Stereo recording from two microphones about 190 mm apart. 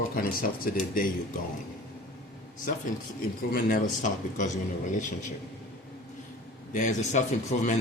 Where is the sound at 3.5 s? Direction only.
50° left (ahead or behind).